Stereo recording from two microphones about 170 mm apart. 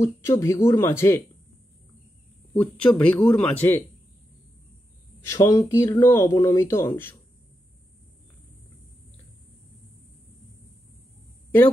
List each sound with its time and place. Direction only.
0.0 s speech: 15° left (ahead or behind)
2.5 s speech: 5° left (ahead or behind)
5.3 s speech: 20° left (ahead or behind)